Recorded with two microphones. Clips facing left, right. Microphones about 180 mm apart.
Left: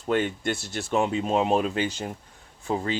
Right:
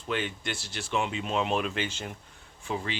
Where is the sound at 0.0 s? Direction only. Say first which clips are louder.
Left 7 dB; 50° left (ahead or behind).